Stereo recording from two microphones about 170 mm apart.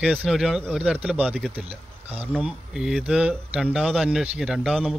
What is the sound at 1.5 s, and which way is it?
Speech, 35° right (ahead or behind).